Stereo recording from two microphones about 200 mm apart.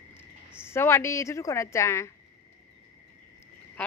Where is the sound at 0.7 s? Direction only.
10° left (ahead or behind).